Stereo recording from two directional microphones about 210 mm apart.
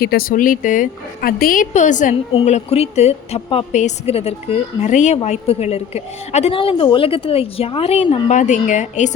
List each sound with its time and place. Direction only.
0.0 s speech: 45° left (ahead or behind)